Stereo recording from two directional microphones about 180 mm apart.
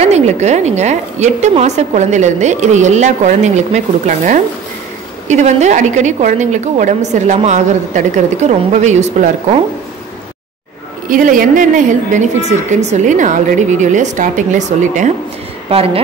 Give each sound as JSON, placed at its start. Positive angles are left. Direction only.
{"t": 0.0, "sound": "a woman's voice", "side_deg": -40}
{"t": 5.3, "sound": "a woman's voice", "side_deg": -40}
{"t": 11.1, "sound": "a woman's voice", "side_deg": -50}
{"t": 15.7, "sound": "a woman's voice", "side_deg": -35}